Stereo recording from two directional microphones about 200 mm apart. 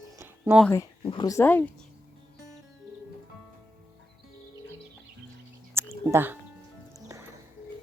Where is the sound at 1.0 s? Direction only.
25° left (ahead or behind).